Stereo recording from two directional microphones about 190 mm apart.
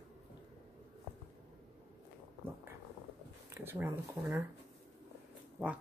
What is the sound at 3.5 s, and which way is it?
Speech, 15° right (ahead or behind).